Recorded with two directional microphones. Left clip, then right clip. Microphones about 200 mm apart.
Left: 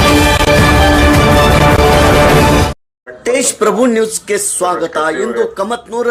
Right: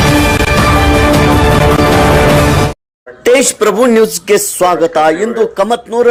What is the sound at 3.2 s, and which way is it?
Speech, 25° right (ahead or behind).